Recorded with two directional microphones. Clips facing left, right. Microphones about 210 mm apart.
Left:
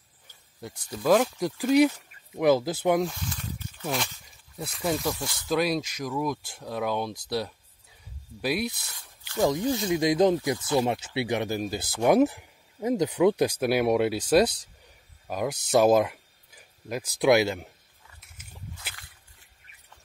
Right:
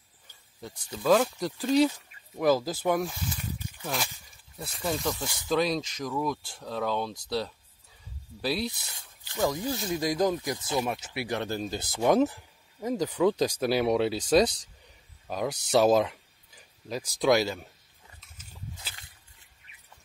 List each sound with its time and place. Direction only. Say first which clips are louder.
0.6 s speech: left 2 dB; 10° left (ahead or behind)
3.0 s snake: left 3 dB; 5° right (ahead or behind)
4.8 s speech: left 2 dB; 5° left (ahead or behind)
8.7 s speech: even; 15° right (ahead or behind)
9.4 s speech: left 4 dB; 20° left (ahead or behind)